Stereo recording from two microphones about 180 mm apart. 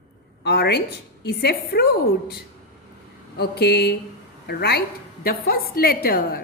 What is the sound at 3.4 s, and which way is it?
A woman's voice, 65° left (ahead or behind).